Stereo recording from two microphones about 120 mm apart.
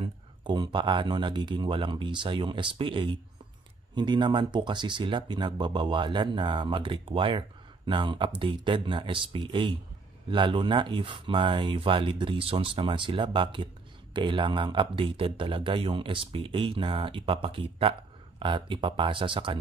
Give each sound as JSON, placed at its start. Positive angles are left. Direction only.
{"t": 0.0, "sound": "speech", "side_deg": -40}